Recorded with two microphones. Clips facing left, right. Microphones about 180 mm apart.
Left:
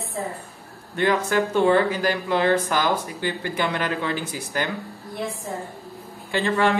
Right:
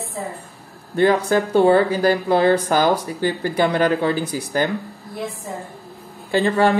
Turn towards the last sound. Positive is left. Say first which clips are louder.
# right 4 dB
turn(degrees=-35)  # may be behind; listen again after turning